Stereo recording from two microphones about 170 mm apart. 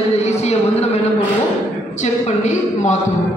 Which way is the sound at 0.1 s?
40° left (ahead or behind).